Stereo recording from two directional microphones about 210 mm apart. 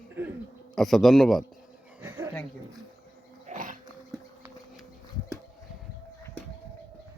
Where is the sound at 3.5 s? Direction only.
40° right (ahead or behind).